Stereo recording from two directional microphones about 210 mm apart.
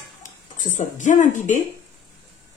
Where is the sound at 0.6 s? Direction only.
35° left (ahead or behind).